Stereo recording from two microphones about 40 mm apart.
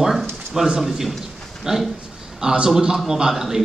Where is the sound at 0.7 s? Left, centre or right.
Centre.